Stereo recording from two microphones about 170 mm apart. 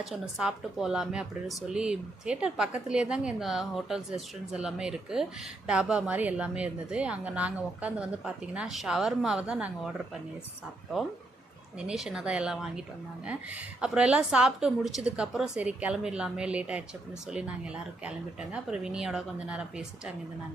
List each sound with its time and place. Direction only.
0.0 s a woman's voice: 5° right (ahead or behind)
11.8 s speech: 5° right (ahead or behind)
18.5 s speech: 5° right (ahead or behind)